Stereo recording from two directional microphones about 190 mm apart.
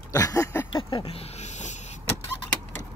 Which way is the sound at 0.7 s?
30° left (ahead or behind).